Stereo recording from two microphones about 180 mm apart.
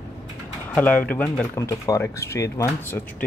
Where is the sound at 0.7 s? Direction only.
10° left (ahead or behind).